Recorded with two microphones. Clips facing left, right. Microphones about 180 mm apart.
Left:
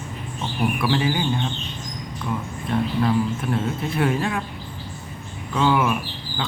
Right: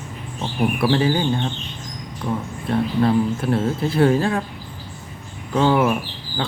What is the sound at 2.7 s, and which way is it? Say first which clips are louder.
Speech: right 3 dB; 35° right (ahead or behind).